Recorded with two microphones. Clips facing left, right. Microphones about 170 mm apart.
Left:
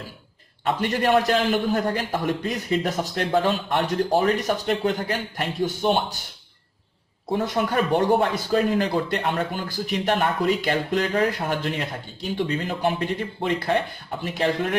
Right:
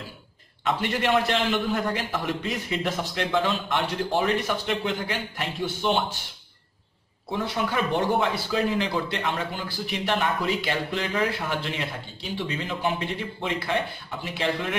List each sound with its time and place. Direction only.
0.7 s a man's voice: 40° left (ahead or behind)
7.2 s a man's voice: 45° left (ahead or behind)